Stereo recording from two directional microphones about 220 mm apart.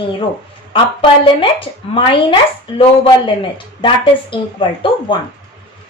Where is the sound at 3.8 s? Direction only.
25° left (ahead or behind).